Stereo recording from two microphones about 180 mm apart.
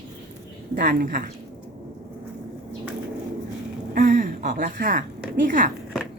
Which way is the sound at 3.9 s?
50° right (ahead or behind).